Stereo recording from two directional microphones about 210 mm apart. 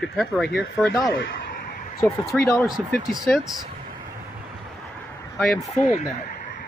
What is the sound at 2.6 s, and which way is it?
Speech, centre (ahead or behind).